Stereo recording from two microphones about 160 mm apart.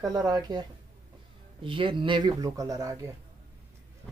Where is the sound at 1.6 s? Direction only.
30° right (ahead or behind).